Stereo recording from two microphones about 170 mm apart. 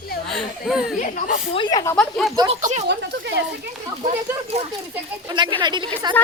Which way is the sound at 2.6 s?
45° right (ahead or behind).